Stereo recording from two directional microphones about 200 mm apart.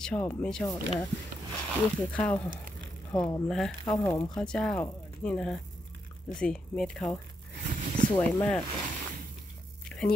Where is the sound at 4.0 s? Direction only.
15° left (ahead or behind).